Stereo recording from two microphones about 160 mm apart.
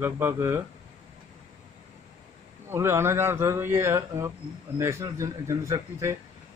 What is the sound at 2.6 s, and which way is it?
Speech, 15° right (ahead or behind).